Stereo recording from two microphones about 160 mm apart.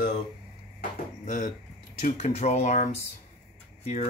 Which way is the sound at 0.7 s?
50° left (ahead or behind).